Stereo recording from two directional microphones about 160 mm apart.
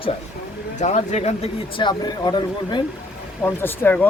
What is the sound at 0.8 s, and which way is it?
Speech, 45° left (ahead or behind).